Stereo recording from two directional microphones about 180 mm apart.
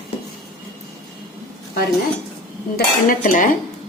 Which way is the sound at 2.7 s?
50° left (ahead or behind).